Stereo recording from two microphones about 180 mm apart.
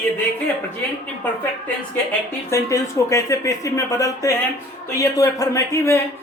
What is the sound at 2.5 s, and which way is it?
A man's voice, 15° left (ahead or behind).